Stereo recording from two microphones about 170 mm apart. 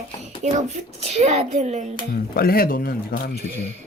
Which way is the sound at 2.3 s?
60° left (ahead or behind).